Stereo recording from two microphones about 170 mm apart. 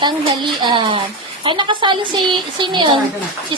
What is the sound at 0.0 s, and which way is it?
A woman's voice, 25° right (ahead or behind).